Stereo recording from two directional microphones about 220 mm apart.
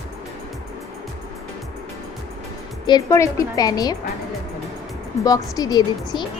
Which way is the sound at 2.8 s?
15° left (ahead or behind).